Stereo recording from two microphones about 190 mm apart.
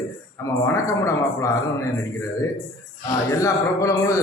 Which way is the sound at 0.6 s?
15° left (ahead or behind).